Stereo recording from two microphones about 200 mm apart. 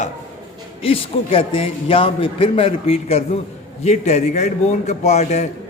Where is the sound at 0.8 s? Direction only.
30° left (ahead or behind).